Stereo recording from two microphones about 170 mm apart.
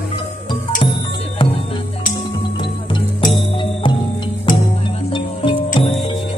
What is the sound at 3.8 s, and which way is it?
Music, 30° left (ahead or behind).